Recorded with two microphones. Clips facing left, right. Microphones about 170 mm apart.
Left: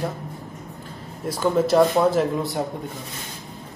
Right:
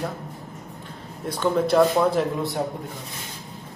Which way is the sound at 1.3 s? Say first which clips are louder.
Left 2 dB; 5° left (ahead or behind).